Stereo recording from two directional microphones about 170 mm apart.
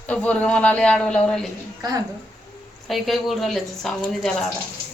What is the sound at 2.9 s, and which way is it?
A woman's voice, centre (ahead or behind).